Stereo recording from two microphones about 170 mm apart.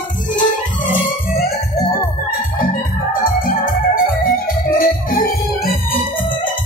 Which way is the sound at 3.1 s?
55° left (ahead or behind).